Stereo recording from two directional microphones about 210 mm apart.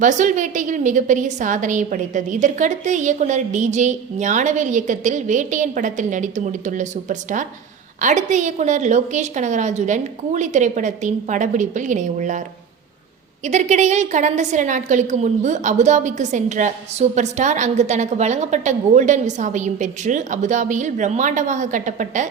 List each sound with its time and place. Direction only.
0.0 s a woman's voice: 35° right (ahead or behind)
13.4 s a woman's voice: 35° right (ahead or behind)